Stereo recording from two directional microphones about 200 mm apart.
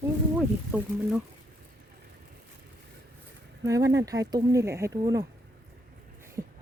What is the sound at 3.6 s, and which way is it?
Speech, 15° right (ahead or behind).